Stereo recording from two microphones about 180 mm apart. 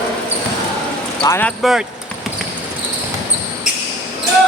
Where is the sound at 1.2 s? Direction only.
15° left (ahead or behind).